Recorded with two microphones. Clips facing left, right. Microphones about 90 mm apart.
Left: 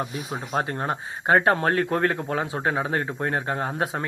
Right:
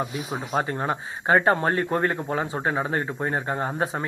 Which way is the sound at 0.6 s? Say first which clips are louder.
Even; 45° left (ahead or behind).